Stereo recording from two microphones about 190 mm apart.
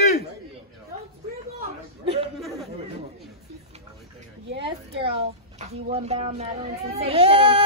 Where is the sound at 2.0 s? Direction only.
30° right (ahead or behind).